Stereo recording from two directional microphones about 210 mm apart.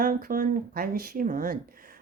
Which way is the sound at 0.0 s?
45° right (ahead or behind).